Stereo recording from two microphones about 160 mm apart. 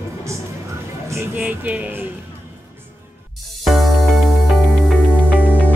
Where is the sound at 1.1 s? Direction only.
10° right (ahead or behind).